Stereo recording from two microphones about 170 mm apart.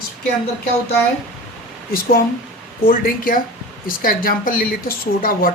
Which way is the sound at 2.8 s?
60° left (ahead or behind).